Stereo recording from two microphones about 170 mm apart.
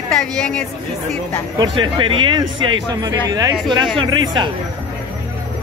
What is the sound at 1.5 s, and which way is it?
Speech, 25° right (ahead or behind).